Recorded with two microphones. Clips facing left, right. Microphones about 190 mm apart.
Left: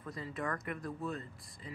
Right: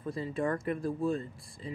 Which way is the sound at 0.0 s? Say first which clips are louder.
Right 7 dB; 25° right (ahead or behind).